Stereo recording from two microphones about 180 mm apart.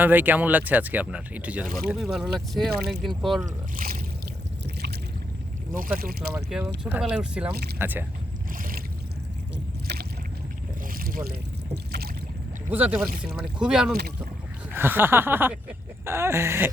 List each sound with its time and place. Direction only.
0.0 s speech: 10° right (ahead or behind)
3.4 s speech: 50° right (ahead or behind)
5.7 s speech: 50° right (ahead or behind)
6.3 s speech: 5° right (ahead or behind)
9.8 s rowboat: 65° right (ahead or behind)
10.9 s boat: 55° right (ahead or behind)
12.7 s speech: 10° right (ahead or behind)